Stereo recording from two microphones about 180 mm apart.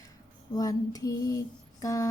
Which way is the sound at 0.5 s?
20° left (ahead or behind).